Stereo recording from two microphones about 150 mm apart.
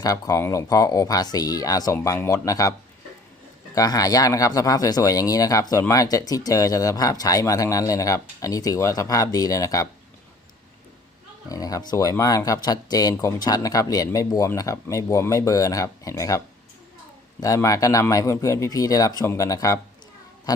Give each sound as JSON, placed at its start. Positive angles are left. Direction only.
{"t": 0.0, "sound": "speech", "side_deg": 25}
{"t": 3.8, "sound": "speech", "side_deg": 25}
{"t": 11.4, "sound": "speech", "side_deg": 25}
{"t": 17.4, "sound": "speech", "side_deg": 20}